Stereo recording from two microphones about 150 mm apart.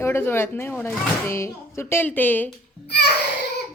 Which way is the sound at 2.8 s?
90° left.